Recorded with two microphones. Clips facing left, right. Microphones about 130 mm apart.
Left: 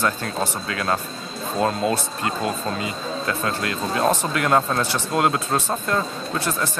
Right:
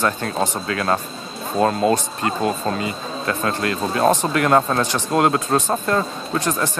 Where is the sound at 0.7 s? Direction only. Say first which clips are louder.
Right 3 dB; 35° right (ahead or behind).